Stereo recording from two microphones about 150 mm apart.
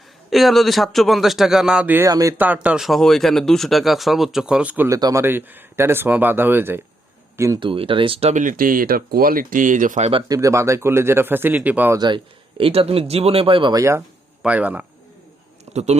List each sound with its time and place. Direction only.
0.3 s speech: centre (ahead or behind)
2.0 s speech: 20° right (ahead or behind)
2.6 s speech: 5° right (ahead or behind)
4.9 s speech: 25° right (ahead or behind)
5.2 s speech: 15° right (ahead or behind)
7.6 s speech: 35° right (ahead or behind); by 10.1 s 60° right (ahead or behind)
10.1 s a man's voice: 35° right (ahead or behind)
10.3 s speech: 20° right (ahead or behind)
11.9 s a man's voice: 30° right (ahead or behind)
14.4 s speech: 10° right (ahead or behind)
15.7 s speech: 50° right (ahead or behind)